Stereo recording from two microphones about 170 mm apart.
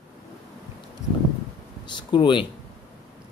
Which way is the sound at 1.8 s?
25° left (ahead or behind).